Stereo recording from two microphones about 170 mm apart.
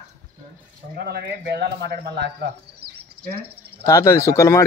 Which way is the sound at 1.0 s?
75° right (ahead or behind).